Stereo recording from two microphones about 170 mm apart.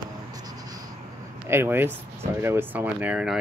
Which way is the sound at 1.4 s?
15° right (ahead or behind).